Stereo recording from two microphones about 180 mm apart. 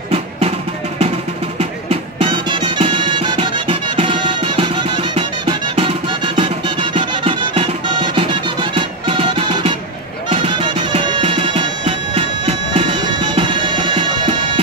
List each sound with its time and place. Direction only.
1.6 s music: 30° right (ahead or behind)